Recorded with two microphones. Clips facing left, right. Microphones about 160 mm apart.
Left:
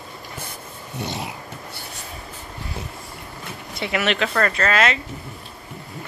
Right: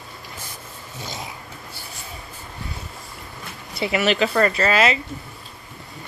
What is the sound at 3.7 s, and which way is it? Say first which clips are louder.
Speech: right 3 dB; centre (ahead or behind).